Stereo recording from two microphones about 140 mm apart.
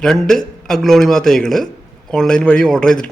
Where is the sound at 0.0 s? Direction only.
5° left (ahead or behind).